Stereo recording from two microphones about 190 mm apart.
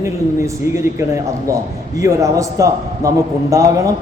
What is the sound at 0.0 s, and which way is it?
A man's voice, 15° right (ahead or behind).